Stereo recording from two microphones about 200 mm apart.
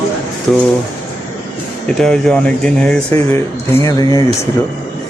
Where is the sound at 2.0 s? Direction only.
5° left (ahead or behind); by 4.2 s 20° left (ahead or behind).